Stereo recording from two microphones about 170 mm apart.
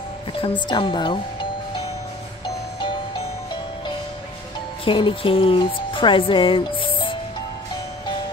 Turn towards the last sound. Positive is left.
turn(degrees=30)  # may be behind; listen again after turning